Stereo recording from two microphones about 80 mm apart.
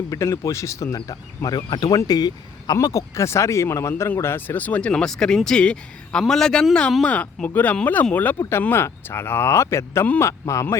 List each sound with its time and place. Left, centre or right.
0.1 s speech: left
1.0 s speech: left
2.8 s speech: left